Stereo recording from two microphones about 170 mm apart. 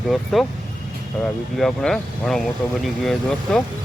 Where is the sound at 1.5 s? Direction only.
5° left (ahead or behind).